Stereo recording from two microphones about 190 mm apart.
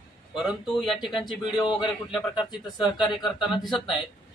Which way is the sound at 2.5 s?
20° left (ahead or behind).